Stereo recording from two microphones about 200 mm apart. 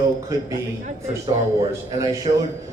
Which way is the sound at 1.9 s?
15° right (ahead or behind).